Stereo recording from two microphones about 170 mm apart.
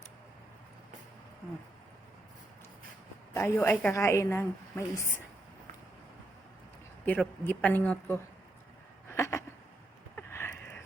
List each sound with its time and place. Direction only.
3.3 s a woman's voice: 10° left (ahead or behind)
7.0 s a woman's voice: 10° left (ahead or behind)
9.1 s a sound: 15° left (ahead or behind)